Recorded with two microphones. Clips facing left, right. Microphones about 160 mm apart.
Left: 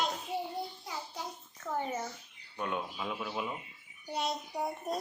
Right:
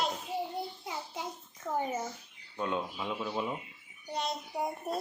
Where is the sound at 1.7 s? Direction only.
10° right (ahead or behind).